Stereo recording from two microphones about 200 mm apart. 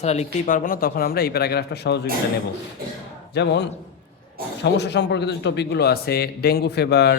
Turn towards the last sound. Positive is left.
turn(degrees=55)  # may be behind; listen again after turning